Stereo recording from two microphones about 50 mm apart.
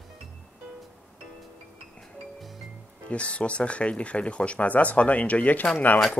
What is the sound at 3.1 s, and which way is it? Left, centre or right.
Speech, left.